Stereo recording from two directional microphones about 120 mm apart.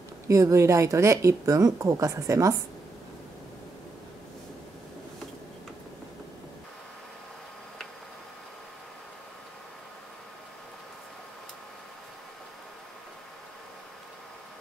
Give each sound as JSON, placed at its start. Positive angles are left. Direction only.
{"t": 0.3, "sound": "speech", "side_deg": -25}